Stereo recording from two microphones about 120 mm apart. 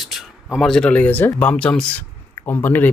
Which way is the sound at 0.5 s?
5° left (ahead or behind).